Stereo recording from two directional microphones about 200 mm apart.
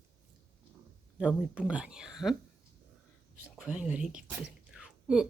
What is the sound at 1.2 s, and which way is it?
Speech, 5° right (ahead or behind).